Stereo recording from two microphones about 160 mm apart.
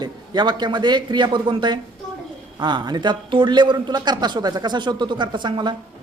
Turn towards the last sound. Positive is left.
turn(degrees=-30)  # may be behind; listen again after turning